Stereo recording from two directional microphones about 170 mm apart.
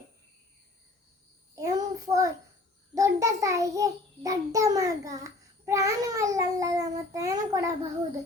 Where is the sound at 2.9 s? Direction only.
20° right (ahead or behind).